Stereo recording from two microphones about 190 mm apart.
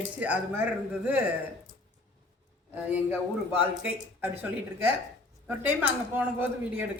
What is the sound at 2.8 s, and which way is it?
A man's voice, 10° right (ahead or behind).